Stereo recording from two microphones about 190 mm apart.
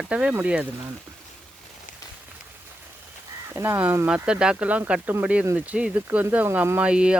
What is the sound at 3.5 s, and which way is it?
Speech, 15° right (ahead or behind).